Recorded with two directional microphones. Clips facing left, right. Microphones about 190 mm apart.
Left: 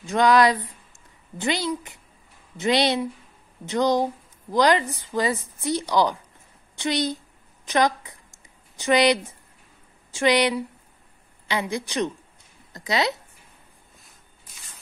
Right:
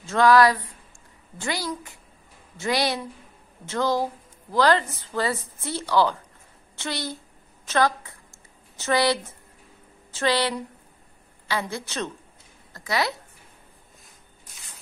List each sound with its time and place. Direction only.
0.0 s a woman's voice: 15° left (ahead or behind)